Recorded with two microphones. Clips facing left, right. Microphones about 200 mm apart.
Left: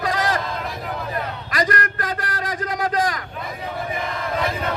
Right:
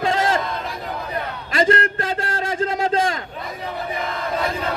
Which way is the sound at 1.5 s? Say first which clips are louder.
Right 5 dB; 25° right (ahead or behind).